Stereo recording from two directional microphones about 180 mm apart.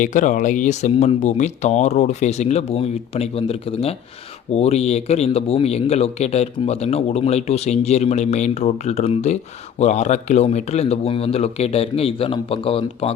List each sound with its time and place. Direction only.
0.0 s a man's voice: 45° left (ahead or behind)